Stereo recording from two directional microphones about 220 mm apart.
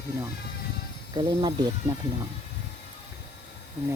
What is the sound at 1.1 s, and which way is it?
Speech, 20° right (ahead or behind).